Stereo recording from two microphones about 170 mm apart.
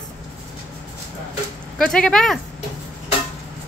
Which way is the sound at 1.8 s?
5° left (ahead or behind).